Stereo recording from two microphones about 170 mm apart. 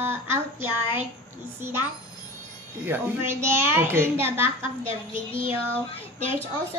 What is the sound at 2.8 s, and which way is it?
A child's voice, 15° right (ahead or behind).